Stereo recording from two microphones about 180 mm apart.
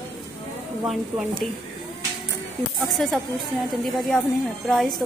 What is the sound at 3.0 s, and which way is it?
Speech, centre (ahead or behind).